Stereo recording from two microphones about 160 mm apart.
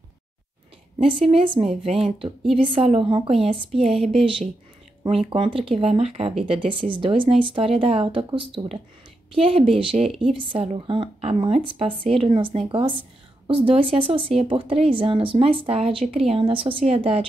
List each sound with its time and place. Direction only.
0.9 s speech: 35° right (ahead or behind)
10.0 s a woman's voice: centre (ahead or behind)
10.3 s speech: 35° right (ahead or behind)